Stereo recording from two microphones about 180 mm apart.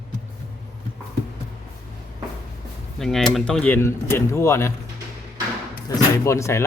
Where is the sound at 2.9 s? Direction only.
Centre (ahead or behind).